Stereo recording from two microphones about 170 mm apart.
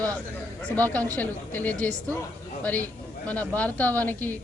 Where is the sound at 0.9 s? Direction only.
10° left (ahead or behind).